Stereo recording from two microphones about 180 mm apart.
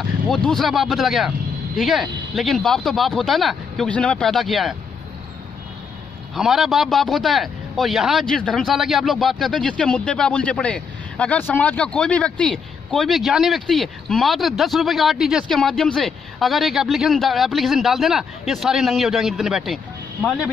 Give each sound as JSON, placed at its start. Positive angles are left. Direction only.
{"t": 0.3, "sound": "a man's voice", "side_deg": 0}
{"t": 6.3, "sound": "a man's voice", "side_deg": 0}